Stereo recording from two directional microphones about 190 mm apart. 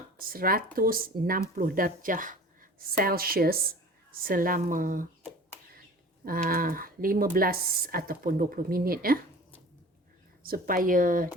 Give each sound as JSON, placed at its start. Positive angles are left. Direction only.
{"t": 0.2, "sound": "a woman's voice", "side_deg": -50}
{"t": 6.2, "sound": "speech", "side_deg": -50}
{"t": 10.4, "sound": "speech", "side_deg": -50}